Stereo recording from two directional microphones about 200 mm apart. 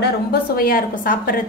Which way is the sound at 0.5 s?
45° left (ahead or behind).